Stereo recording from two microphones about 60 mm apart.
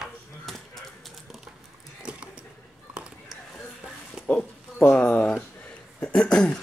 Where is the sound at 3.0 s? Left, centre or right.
Centre.